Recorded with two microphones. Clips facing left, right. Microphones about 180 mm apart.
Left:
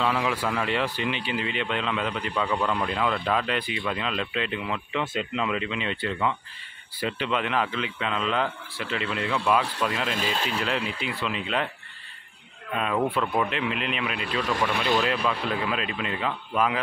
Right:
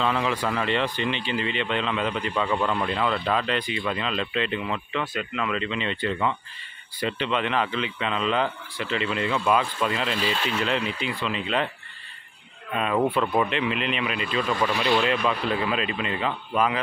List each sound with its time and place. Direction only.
0.0 s speech: 5° left (ahead or behind)
4.9 s speech: 25° left (ahead or behind)
5.6 s speech: 5° left (ahead or behind)
10.0 s speech: 45° left (ahead or behind)
10.6 s speech: 5° left (ahead or behind)
12.7 s speech: centre (ahead or behind)
14.7 s speech: 55° left (ahead or behind)
15.2 s speech: centre (ahead or behind)